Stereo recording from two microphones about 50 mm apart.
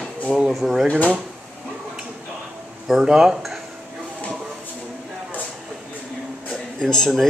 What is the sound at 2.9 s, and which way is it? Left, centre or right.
Speech, centre.